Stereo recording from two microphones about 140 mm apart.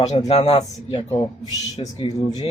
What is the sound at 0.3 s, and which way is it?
Speech, 50° left (ahead or behind).